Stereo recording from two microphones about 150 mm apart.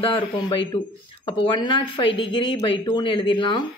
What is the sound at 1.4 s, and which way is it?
A woman's voice, 35° left (ahead or behind).